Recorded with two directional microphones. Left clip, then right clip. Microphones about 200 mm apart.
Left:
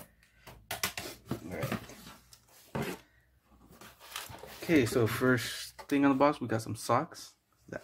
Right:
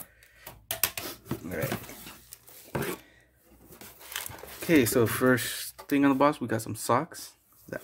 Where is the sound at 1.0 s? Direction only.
35° right (ahead or behind).